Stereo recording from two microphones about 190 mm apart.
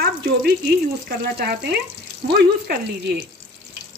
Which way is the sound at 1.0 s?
55° right (ahead or behind).